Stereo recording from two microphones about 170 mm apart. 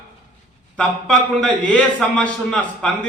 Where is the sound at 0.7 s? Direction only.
5° left (ahead or behind).